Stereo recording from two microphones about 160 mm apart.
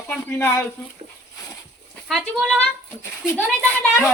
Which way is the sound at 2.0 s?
Centre (ahead or behind).